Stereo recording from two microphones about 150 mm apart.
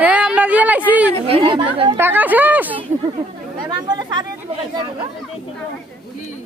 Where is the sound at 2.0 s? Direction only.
15° right (ahead or behind).